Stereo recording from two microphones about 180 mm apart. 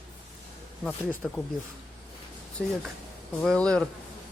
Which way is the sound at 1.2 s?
5° right (ahead or behind).